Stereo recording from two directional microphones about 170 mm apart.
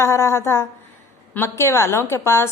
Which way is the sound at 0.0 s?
15° left (ahead or behind).